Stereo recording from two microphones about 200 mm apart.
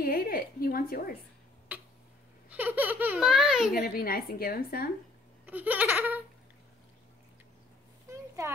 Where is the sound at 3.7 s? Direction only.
50° left (ahead or behind).